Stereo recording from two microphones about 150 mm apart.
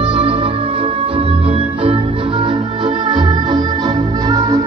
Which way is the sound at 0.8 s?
35° right (ahead or behind).